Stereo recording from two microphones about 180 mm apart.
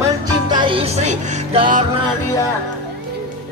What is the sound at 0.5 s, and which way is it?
Music, 30° right (ahead or behind).